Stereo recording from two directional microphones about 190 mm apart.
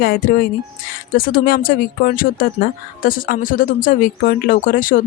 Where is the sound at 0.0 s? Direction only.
50° left (ahead or behind).